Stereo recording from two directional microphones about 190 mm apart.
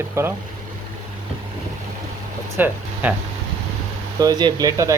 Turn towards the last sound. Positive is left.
turn(degrees=-15)  # may be behind; listen again after turning